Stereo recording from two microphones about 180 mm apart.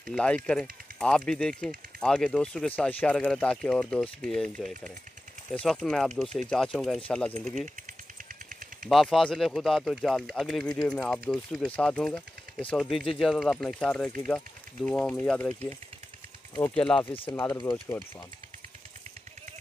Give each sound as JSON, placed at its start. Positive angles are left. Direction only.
{"t": 0.1, "sound": "speech", "side_deg": 5}
{"t": 8.8, "sound": "speech", "side_deg": 0}
{"t": 16.5, "sound": "speech", "side_deg": 10}
{"t": 17.1, "sound": "speech", "side_deg": 30}